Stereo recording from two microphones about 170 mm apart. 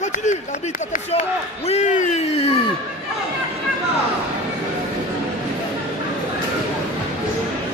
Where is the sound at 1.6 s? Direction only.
40° left (ahead or behind).